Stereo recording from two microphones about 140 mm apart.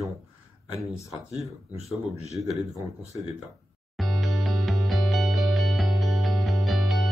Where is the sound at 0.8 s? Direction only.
20° left (ahead or behind).